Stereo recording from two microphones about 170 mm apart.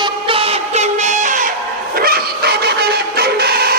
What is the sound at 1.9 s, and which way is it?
Music, 60° right (ahead or behind).